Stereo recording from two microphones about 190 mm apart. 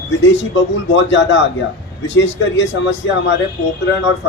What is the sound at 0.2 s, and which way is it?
Speech, 75° left (ahead or behind).